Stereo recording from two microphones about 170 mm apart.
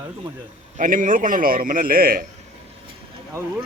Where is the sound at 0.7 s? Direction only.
50° right (ahead or behind).